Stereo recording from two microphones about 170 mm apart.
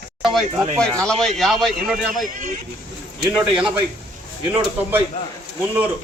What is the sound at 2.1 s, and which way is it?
Speech, 50° right (ahead or behind).